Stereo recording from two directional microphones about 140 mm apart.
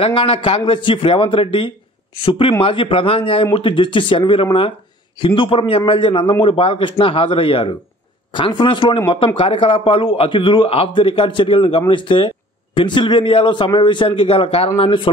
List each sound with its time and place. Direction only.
0.0 s a man's voice: 40° left (ahead or behind)